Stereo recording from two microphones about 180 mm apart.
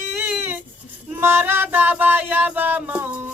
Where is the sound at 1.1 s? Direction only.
10° right (ahead or behind).